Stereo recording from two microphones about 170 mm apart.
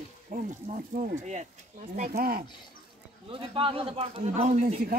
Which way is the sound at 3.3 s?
30° right (ahead or behind).